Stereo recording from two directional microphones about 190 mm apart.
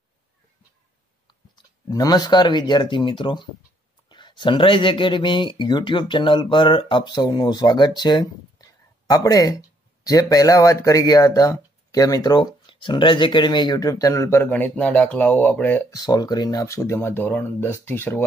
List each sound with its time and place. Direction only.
1.2 s speech: 20° left (ahead or behind)
16.0 s speech: 20° left (ahead or behind)